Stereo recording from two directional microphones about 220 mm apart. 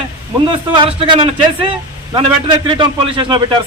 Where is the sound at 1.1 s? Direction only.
25° right (ahead or behind).